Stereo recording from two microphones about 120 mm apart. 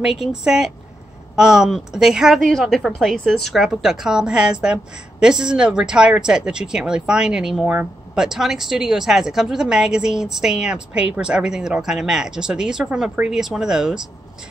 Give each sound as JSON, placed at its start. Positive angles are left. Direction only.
{"t": 0.0, "sound": "speech", "side_deg": -5}